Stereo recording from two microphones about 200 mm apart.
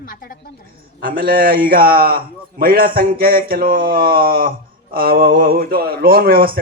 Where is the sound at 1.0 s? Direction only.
45° right (ahead or behind).